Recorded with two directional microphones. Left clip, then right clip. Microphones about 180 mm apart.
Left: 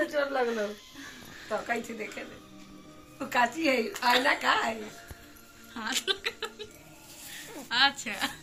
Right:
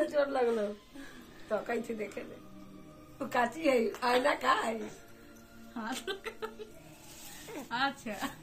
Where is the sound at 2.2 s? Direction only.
70° right (ahead or behind).